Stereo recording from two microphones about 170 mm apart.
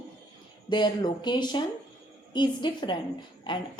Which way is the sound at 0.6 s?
25° left (ahead or behind).